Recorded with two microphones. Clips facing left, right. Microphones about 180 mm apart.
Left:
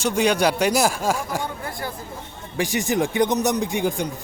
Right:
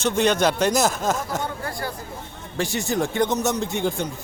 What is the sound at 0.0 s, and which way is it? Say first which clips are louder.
A man's voice: even; 10° left (ahead or behind).